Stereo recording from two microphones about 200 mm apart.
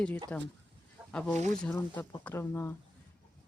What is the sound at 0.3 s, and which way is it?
Speech, 10° left (ahead or behind).